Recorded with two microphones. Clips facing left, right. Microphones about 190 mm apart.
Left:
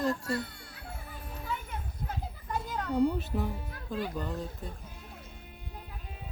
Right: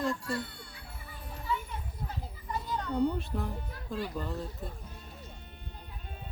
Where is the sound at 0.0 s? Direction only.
40° left (ahead or behind).